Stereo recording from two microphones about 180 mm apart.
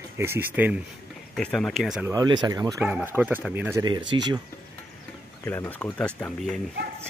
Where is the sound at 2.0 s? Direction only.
20° right (ahead or behind).